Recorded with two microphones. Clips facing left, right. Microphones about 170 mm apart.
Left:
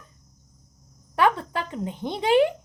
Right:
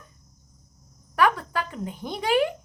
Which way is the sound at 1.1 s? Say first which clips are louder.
Left 1 dB; 25° left (ahead or behind).